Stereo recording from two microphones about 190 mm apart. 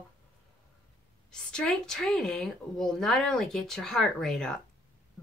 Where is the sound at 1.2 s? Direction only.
5° left (ahead or behind).